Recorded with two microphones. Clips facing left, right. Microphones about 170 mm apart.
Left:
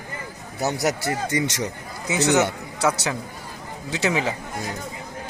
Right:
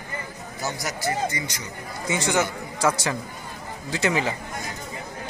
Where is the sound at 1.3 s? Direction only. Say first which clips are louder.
Left 9 dB; 90° left.